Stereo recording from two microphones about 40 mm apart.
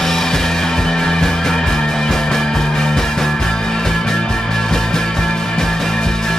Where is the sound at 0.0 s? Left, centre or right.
Centre.